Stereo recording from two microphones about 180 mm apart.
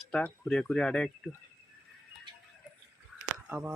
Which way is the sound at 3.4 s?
10° right (ahead or behind).